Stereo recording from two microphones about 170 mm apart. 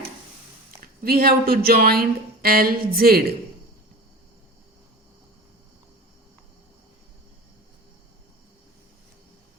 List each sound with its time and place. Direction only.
0.8 s speech: 60° right (ahead or behind)